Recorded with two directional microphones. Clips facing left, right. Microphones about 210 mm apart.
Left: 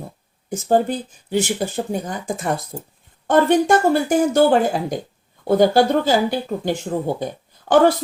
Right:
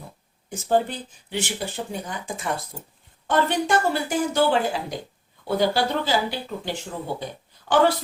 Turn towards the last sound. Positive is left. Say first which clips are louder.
# left 5 dB
turn(degrees=45)  # may be behind; listen again after turning